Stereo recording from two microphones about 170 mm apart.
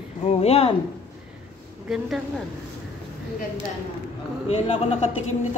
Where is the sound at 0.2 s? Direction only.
40° left (ahead or behind).